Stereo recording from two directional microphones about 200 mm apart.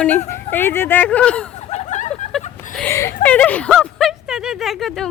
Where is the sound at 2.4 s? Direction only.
40° left (ahead or behind).